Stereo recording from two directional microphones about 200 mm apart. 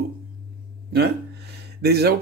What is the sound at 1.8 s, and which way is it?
Speech, 55° right (ahead or behind).